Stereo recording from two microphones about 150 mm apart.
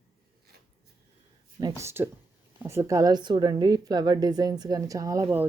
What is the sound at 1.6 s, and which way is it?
A woman's voice, 20° right (ahead or behind).